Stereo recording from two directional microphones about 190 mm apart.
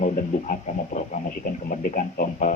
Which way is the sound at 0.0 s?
45° left (ahead or behind).